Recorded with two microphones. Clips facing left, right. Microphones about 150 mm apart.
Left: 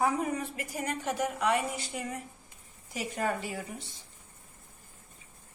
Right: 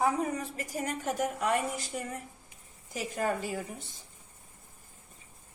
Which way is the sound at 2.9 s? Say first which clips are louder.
Even; 45° right (ahead or behind).